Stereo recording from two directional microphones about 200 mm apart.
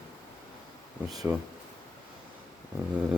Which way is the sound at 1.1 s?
20° right (ahead or behind).